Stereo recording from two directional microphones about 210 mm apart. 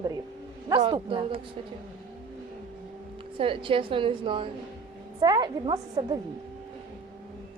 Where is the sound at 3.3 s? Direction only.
25° right (ahead or behind).